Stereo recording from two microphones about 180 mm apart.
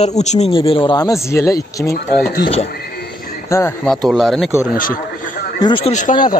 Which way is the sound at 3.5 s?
15° left (ahead or behind).